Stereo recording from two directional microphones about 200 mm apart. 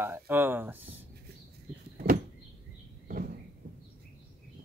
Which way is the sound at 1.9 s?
45° right (ahead or behind).